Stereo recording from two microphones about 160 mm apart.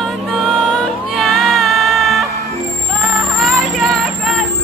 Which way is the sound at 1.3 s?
Centre (ahead or behind).